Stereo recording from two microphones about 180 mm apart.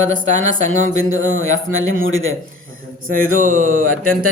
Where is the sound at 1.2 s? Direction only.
90° right.